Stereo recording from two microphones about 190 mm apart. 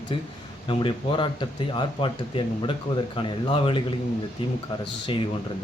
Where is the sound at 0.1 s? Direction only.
30° left (ahead or behind).